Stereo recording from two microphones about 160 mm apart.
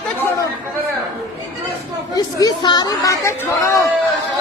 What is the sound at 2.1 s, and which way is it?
Speech, 25° left (ahead or behind).